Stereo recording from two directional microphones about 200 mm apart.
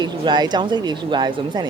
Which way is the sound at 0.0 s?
20° right (ahead or behind).